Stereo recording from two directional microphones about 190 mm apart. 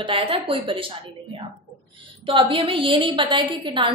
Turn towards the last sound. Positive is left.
turn(degrees=-25)  # may be behind; listen again after turning